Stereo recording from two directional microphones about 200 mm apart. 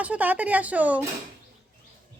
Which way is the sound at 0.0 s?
5° right (ahead or behind).